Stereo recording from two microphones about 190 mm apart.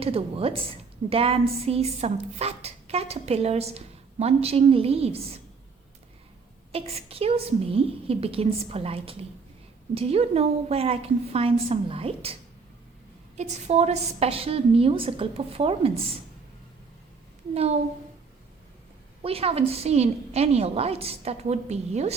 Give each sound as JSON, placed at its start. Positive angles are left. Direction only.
{"t": 0.0, "sound": "a woman's voice", "side_deg": -30}
{"t": 6.7, "sound": "a woman's voice", "side_deg": -30}
{"t": 17.5, "sound": "a woman's voice", "side_deg": -35}
{"t": 19.2, "sound": "a woman's voice", "side_deg": -30}